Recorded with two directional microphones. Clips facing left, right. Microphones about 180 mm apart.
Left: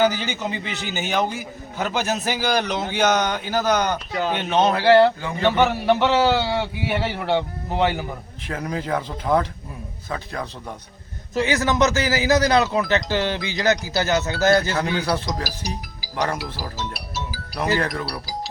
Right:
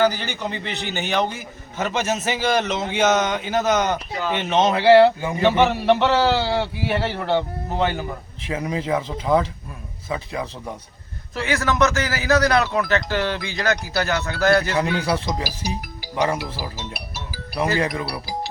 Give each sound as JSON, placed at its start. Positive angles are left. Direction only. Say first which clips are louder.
{"t": 0.0, "sound": "a man's voice", "louder": "even", "side_deg": 10}
{"t": 8.4, "sound": "a man's voice", "louder": "right 2 dB", "side_deg": -5}
{"t": 11.3, "sound": "a man's voice", "louder": "left 1 dB", "side_deg": 20}
{"t": 14.8, "sound": "a man's voice", "louder": "right 1 dB", "side_deg": -5}
{"t": 17.5, "sound": "speech", "louder": "right 1 dB", "side_deg": -5}